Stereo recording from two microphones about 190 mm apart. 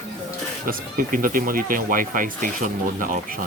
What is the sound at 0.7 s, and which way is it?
Speech, 50° right (ahead or behind).